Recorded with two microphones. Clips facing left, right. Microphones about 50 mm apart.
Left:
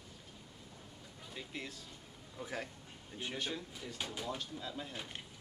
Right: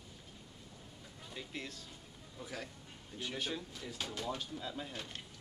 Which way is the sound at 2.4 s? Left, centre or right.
Left.